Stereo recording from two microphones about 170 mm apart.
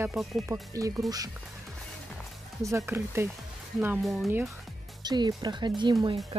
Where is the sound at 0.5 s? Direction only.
20° right (ahead or behind).